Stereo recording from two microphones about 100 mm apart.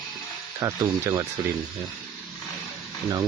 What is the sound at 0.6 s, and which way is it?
Speech, 30° right (ahead or behind).